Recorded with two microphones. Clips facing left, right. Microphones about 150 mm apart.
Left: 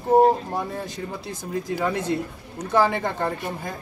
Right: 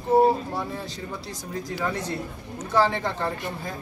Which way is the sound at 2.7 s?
50° left (ahead or behind).